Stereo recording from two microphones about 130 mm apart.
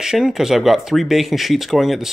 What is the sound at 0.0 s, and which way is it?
Speech, 5° right (ahead or behind).